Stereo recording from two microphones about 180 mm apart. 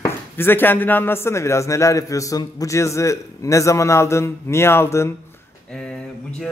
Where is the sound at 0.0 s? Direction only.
10° left (ahead or behind).